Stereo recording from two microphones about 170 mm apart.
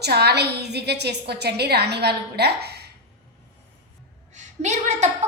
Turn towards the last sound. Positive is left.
turn(degrees=-40)  # may be behind; listen again after turning